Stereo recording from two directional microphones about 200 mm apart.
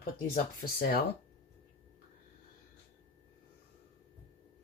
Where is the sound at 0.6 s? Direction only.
50° left (ahead or behind).